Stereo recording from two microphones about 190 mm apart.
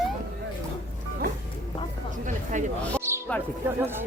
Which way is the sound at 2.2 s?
40° right (ahead or behind).